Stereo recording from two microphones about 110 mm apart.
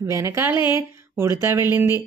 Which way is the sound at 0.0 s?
25° right (ahead or behind).